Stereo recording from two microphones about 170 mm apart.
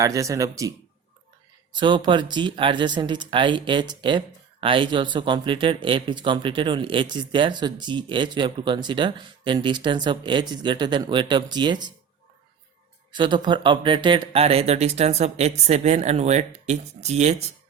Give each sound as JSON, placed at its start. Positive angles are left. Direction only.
{"t": 0.0, "sound": "speech", "side_deg": -20}
{"t": 1.7, "sound": "speech", "side_deg": -25}
{"t": 13.1, "sound": "speech", "side_deg": -25}